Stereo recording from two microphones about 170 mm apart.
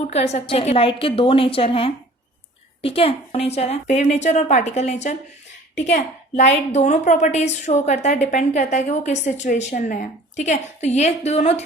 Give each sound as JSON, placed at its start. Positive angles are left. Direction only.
{"t": 0.0, "sound": "a woman's voice", "side_deg": 40}